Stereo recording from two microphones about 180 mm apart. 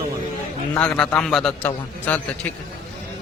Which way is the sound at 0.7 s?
10° left (ahead or behind).